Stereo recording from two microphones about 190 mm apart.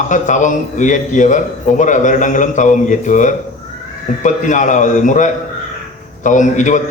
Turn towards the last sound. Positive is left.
turn(degrees=40)  # may be behind; listen again after turning